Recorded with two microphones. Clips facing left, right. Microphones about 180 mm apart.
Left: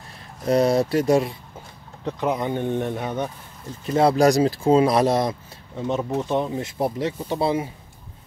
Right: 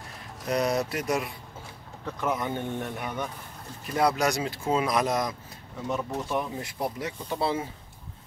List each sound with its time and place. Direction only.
0.5 s speech: 30° left (ahead or behind)